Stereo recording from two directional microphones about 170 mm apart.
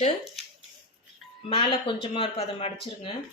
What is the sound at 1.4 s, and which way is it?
Speech, 35° left (ahead or behind).